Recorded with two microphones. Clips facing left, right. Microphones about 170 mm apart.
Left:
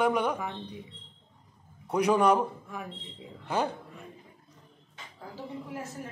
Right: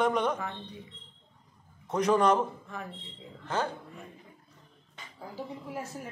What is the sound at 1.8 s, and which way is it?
A man's voice, 10° left (ahead or behind).